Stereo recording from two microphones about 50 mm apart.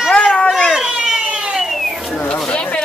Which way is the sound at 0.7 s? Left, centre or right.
Centre.